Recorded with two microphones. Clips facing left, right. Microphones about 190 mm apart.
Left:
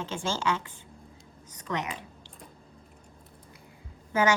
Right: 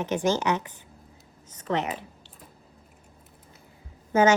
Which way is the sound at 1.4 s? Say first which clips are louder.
Right 5 dB; 25° right (ahead or behind).